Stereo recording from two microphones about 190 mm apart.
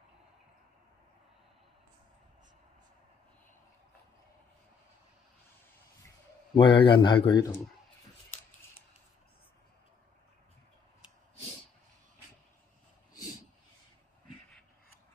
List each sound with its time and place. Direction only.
6.5 s speech: 25° left (ahead or behind)